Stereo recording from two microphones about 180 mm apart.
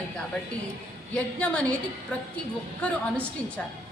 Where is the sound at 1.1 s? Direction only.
5° left (ahead or behind).